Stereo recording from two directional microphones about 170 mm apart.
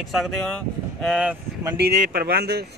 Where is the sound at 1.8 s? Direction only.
65° right (ahead or behind).